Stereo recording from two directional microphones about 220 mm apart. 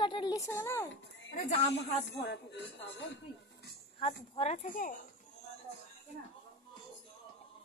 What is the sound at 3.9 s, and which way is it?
Speech, 25° left (ahead or behind).